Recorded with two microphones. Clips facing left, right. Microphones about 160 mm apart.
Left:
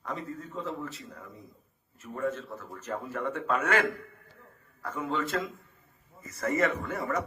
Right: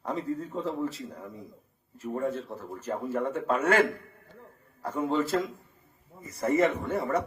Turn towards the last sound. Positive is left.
turn(degrees=-30)  # may be behind; listen again after turning